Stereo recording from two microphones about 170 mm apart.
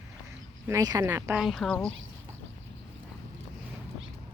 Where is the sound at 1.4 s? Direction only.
Centre (ahead or behind).